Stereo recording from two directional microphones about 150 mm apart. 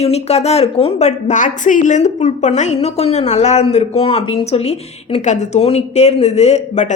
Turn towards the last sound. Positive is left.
turn(degrees=45)  # may be behind; listen again after turning